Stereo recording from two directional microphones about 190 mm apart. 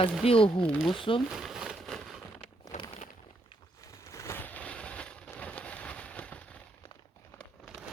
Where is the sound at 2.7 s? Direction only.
40° left (ahead or behind).